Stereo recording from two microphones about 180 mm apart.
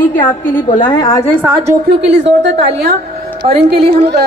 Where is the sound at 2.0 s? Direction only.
75° right (ahead or behind).